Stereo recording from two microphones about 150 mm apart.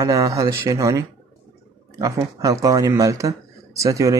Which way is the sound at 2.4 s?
25° right (ahead or behind).